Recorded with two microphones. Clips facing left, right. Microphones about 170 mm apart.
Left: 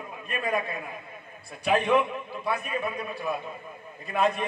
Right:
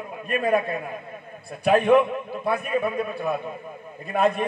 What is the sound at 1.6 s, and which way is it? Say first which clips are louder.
A man's voice: right 6 dB; 55° right (ahead or behind).